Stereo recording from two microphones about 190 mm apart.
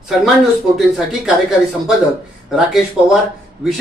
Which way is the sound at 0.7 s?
Centre (ahead or behind).